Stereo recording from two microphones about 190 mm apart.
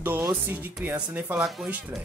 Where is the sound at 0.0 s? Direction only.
10° right (ahead or behind).